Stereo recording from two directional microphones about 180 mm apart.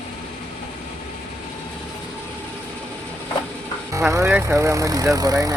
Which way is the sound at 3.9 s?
15° right (ahead or behind).